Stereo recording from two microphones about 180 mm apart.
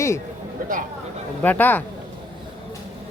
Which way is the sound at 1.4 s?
10° left (ahead or behind).